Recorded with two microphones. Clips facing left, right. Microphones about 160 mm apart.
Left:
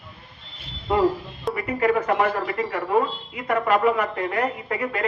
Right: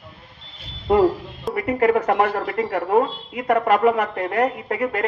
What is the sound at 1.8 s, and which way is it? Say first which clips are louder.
Speech: right 2 dB; 65° right (ahead or behind).